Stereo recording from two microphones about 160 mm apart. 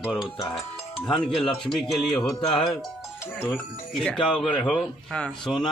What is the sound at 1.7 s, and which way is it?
Speech, centre (ahead or behind).